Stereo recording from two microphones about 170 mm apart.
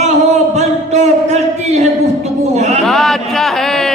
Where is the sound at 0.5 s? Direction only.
40° right (ahead or behind).